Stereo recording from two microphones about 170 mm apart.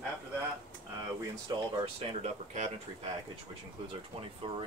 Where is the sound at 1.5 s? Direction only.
35° right (ahead or behind).